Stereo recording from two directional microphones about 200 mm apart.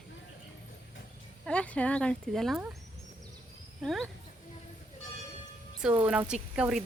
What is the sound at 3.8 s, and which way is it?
Speech, centre (ahead or behind).